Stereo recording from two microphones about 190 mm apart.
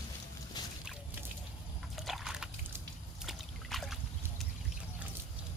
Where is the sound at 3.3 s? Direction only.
Centre (ahead or behind).